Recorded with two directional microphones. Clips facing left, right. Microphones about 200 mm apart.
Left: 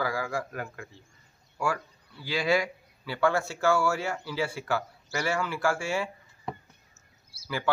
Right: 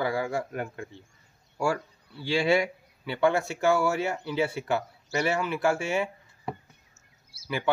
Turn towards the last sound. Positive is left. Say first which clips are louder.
# right 1 dB
turn(degrees=-20)  # may be behind; listen again after turning